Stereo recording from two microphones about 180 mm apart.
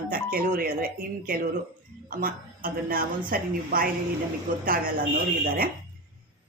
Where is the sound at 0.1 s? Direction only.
55° right (ahead or behind).